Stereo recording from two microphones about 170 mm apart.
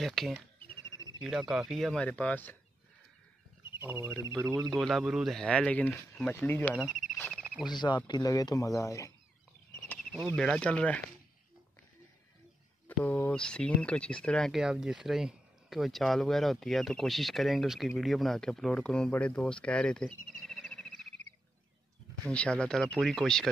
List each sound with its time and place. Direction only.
0.0 s speech: centre (ahead or behind)
3.8 s speech: 15° right (ahead or behind)
4.7 s speech: centre (ahead or behind)
6.7 s speech: 5° right (ahead or behind)
7.2 s cricket: 5° left (ahead or behind)
7.6 s speech: 25° left (ahead or behind)
10.1 s speech: centre (ahead or behind)
12.8 s speech: 10° left (ahead or behind)
22.2 s speech: 5° left (ahead or behind)